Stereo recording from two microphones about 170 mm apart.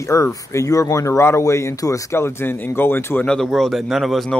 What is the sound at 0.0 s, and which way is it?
Speech, 15° left (ahead or behind).